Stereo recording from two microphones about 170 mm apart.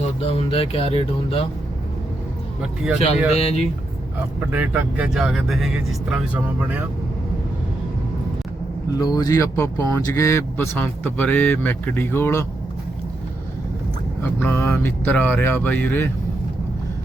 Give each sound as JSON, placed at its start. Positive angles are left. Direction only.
{"t": 0.3, "sound": "speech", "side_deg": 35}
{"t": 2.6, "sound": "speech", "side_deg": -5}
{"t": 3.3, "sound": "speech", "side_deg": 35}
{"t": 4.4, "sound": "speech", "side_deg": -10}
{"t": 9.0, "sound": "speech", "side_deg": 25}
{"t": 14.2, "sound": "speech", "side_deg": 10}